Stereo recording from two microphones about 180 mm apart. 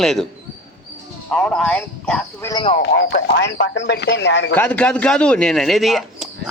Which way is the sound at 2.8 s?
70° left (ahead or behind).